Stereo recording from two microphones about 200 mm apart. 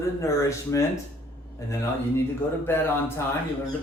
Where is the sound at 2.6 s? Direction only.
10° left (ahead or behind).